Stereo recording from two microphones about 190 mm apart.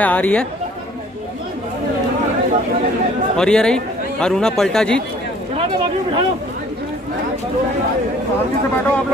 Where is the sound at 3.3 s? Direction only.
5° left (ahead or behind).